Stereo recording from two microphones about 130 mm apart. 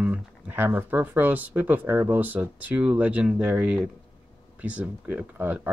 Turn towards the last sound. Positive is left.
turn(degrees=-15)  # may be behind; listen again after turning